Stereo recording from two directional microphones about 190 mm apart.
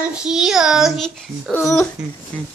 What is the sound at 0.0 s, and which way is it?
A man's voice, 5° right (ahead or behind).